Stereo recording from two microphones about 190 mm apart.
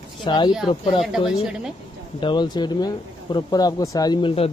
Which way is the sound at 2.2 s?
25° left (ahead or behind).